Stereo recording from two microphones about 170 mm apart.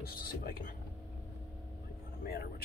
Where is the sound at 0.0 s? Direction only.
60° left (ahead or behind).